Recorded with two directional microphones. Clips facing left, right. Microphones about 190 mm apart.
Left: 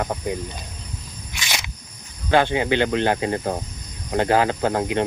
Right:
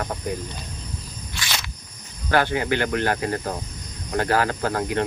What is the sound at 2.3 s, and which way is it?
Speech, 20° left (ahead or behind).